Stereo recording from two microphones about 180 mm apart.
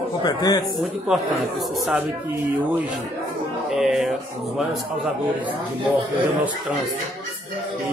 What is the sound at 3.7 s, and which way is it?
Music, centre (ahead or behind).